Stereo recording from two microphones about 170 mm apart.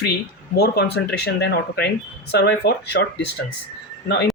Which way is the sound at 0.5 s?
75° left (ahead or behind).